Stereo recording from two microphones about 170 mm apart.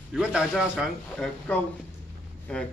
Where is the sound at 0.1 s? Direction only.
5° right (ahead or behind).